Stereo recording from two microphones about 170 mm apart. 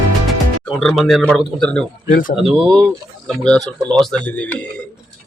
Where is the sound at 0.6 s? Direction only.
5° left (ahead or behind).